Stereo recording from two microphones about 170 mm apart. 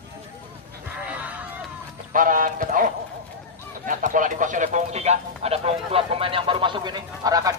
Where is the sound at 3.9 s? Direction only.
50° right (ahead or behind).